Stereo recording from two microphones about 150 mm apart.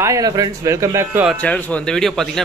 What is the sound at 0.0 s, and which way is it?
Speech, 20° right (ahead or behind).